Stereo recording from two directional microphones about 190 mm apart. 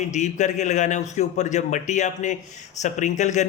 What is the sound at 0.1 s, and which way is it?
A man's voice, 40° left (ahead or behind).